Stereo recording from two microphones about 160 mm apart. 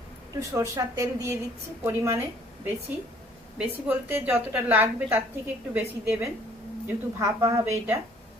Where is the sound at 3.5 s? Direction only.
10° right (ahead or behind).